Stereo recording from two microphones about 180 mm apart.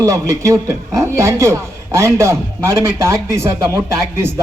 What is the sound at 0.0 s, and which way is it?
A man's voice, 20° right (ahead or behind).